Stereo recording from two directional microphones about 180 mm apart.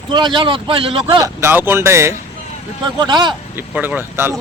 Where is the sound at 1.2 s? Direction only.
15° right (ahead or behind).